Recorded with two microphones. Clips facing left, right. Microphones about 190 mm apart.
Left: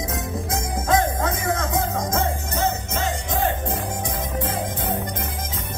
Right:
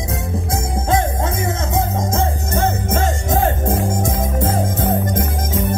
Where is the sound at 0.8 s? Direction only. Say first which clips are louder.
Right 1 dB; 25° right (ahead or behind).